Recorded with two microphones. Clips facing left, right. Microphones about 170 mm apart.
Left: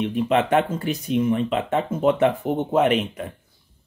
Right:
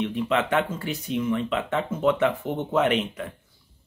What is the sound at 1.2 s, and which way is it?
Speech, 30° left (ahead or behind).